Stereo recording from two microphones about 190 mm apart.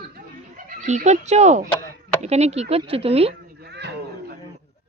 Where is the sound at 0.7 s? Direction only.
40° right (ahead or behind).